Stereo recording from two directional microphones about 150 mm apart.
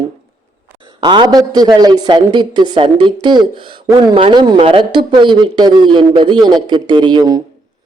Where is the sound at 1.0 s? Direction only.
30° right (ahead or behind).